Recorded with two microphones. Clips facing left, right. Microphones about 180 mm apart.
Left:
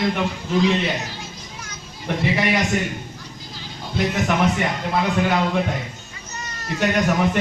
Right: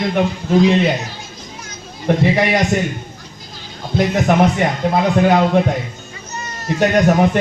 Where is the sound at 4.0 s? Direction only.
45° right (ahead or behind).